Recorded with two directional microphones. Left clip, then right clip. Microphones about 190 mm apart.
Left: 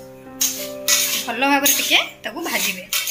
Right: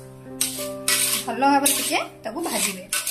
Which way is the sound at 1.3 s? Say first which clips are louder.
Left 1 dB; 5° right (ahead or behind).